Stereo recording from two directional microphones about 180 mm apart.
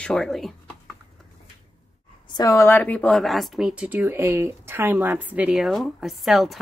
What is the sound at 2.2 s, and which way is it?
Speech, 20° left (ahead or behind).